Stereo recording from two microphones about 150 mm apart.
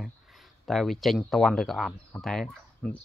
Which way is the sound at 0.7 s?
Centre (ahead or behind).